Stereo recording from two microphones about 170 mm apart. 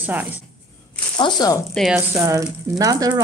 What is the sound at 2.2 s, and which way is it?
Speech, 20° right (ahead or behind).